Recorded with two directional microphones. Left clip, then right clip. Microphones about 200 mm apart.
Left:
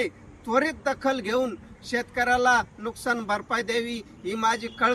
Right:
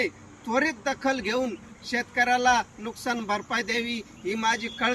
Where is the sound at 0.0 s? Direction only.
15° left (ahead or behind).